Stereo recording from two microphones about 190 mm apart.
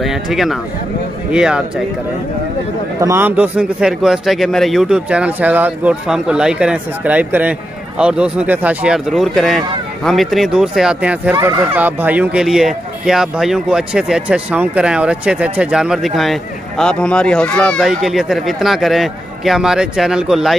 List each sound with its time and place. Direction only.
0.0 s speech: centre (ahead or behind)
3.0 s speech: 15° right (ahead or behind)
11.3 s speech: 20° right (ahead or behind)
11.7 s speech: 10° right (ahead or behind)